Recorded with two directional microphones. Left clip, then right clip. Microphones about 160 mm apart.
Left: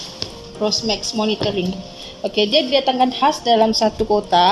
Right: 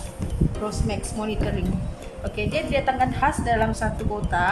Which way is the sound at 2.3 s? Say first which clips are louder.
Left 9 dB; 15° right (ahead or behind).